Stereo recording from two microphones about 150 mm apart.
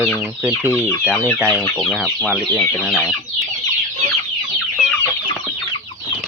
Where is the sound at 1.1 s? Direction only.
10° left (ahead or behind).